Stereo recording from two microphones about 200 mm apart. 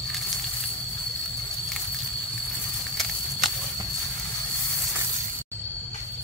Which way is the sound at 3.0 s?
Centre (ahead or behind).